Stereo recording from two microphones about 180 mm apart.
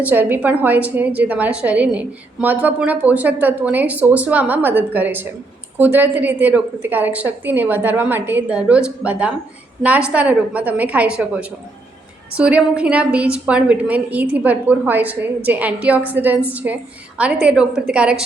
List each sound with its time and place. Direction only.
0.0 s a woman's voice: 10° right (ahead or behind)